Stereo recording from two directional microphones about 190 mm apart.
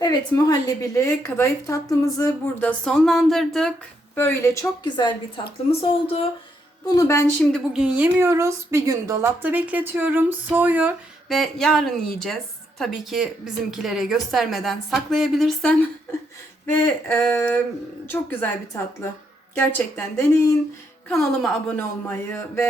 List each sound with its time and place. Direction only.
0.0 s a woman's voice: 20° left (ahead or behind)
2.6 s a woman's voice: 5° left (ahead or behind); by 6.2 s 30° left (ahead or behind)
6.9 s a woman's voice: 15° left (ahead or behind)
7.7 s a woman's voice: 5° right (ahead or behind); by 20.6 s 15° left (ahead or behind)
21.1 s a woman's voice: 5° left (ahead or behind)